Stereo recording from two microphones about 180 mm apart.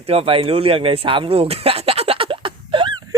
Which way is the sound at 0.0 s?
35° right (ahead or behind).